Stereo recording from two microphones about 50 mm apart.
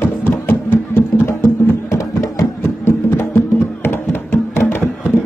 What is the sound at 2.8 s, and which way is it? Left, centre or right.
Music, left.